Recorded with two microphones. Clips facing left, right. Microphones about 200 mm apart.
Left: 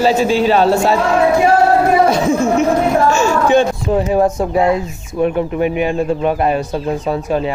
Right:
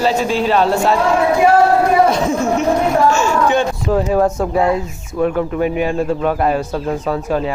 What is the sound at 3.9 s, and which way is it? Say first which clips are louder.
Speech: left 1 dB; 15° left (ahead or behind).